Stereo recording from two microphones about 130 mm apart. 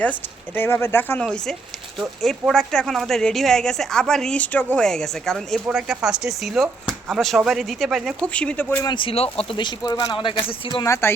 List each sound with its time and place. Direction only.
0.0 s a woman's voice: 15° left (ahead or behind)
1.2 s a woman's voice: 5° left (ahead or behind)
8.3 s a woman's voice: 10° left (ahead or behind)
8.8 s speech: 35° left (ahead or behind)
10.8 s speech: 20° left (ahead or behind)